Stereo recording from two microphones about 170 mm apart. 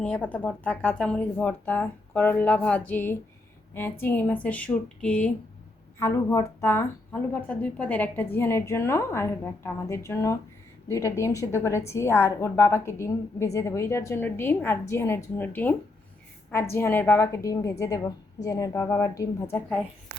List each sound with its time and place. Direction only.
0.0 s a woman's voice: 10° left (ahead or behind)